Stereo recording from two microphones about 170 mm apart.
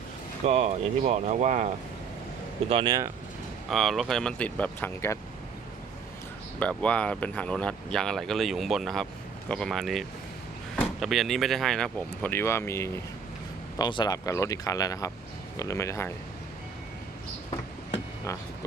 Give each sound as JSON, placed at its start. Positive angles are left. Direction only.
{"t": 0.4, "sound": "speech", "side_deg": -40}
{"t": 2.6, "sound": "speech", "side_deg": -30}
{"t": 3.7, "sound": "speech", "side_deg": 0}
{"t": 6.6, "sound": "speech", "side_deg": 10}
{"t": 13.7, "sound": "speech", "side_deg": 25}
{"t": 18.3, "sound": "speech", "side_deg": 15}